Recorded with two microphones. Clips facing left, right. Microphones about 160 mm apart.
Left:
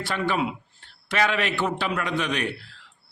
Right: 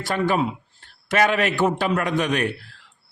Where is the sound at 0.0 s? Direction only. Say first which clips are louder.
Right 4 dB; 45° right (ahead or behind).